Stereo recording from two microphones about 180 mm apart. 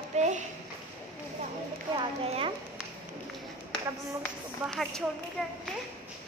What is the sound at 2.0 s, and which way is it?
Speech, 30° right (ahead or behind).